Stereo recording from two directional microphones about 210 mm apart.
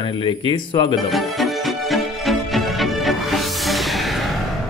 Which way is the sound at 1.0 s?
Centre (ahead or behind).